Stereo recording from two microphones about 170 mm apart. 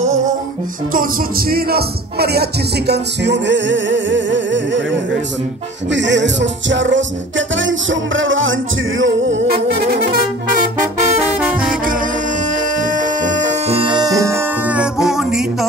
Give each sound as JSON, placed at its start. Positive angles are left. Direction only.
{"t": 1.5, "sound": "music", "side_deg": -65}
{"t": 2.9, "sound": "music", "side_deg": -90}
{"t": 5.9, "sound": "music", "side_deg": -90}
{"t": 9.0, "sound": "music", "side_deg": -80}
{"t": 12.5, "sound": "music", "side_deg": -50}